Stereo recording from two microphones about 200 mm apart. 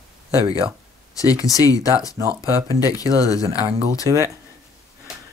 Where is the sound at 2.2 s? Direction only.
15° right (ahead or behind).